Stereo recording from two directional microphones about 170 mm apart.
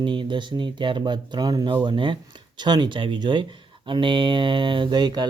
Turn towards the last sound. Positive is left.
turn(degrees=-25)  # may be behind; listen again after turning